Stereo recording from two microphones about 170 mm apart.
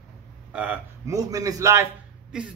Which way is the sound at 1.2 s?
20° right (ahead or behind).